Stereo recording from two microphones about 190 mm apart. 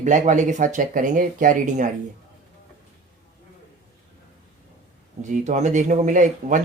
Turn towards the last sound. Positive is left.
turn(degrees=-40)  # may be behind; listen again after turning